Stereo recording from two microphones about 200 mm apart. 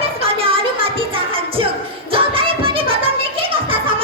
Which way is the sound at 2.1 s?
25° right (ahead or behind).